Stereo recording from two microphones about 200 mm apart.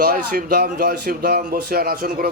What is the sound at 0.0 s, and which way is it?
Speech, 50° right (ahead or behind).